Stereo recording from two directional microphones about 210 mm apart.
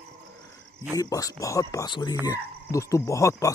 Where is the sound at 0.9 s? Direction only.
15° left (ahead or behind).